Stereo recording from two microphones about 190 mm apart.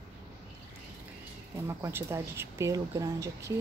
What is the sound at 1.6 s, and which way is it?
Speech, 15° right (ahead or behind).